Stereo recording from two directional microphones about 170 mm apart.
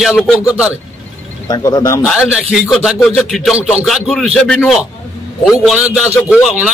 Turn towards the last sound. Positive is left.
turn(degrees=-5)  # may be behind; listen again after turning